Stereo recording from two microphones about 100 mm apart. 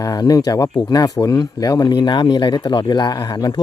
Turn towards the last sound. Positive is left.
turn(degrees=40)  # may be behind; listen again after turning